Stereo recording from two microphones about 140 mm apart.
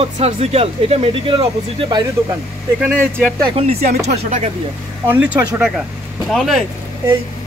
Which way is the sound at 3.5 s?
50° right (ahead or behind).